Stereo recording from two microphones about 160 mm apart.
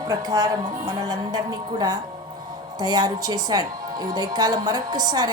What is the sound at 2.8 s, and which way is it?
A woman's voice, 25° right (ahead or behind).